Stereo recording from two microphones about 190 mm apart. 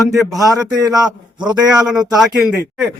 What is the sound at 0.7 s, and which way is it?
Speech, 20° right (ahead or behind).